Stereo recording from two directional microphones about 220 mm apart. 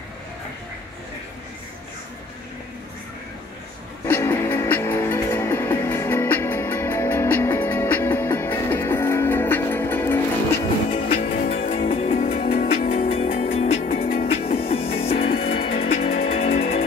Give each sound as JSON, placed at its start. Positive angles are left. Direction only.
{"t": 4.1, "sound": "music", "side_deg": 10}
{"t": 11.4, "sound": "music", "side_deg": 25}